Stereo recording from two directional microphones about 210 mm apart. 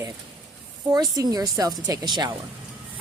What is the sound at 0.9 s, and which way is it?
Speech, 15° right (ahead or behind).